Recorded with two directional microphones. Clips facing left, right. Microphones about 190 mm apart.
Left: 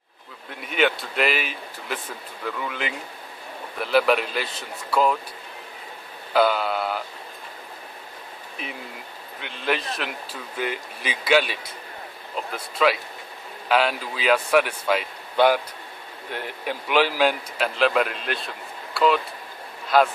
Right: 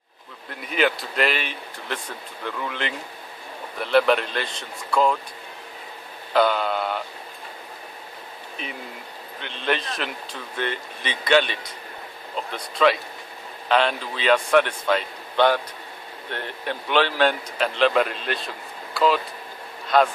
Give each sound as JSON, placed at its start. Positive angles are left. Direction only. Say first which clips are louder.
{"t": 0.5, "sound": "speech", "louder": "even", "side_deg": 0}
{"t": 6.3, "sound": "mantra", "louder": "even", "side_deg": 5}
{"t": 9.4, "sound": "speech", "louder": "even", "side_deg": 5}